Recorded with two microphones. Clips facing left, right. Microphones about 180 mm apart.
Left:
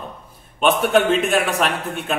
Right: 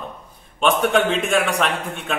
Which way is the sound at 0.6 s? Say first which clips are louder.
Left 1 dB; 5° left (ahead or behind).